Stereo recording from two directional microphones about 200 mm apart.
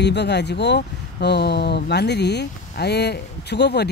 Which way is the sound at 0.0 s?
60° left (ahead or behind).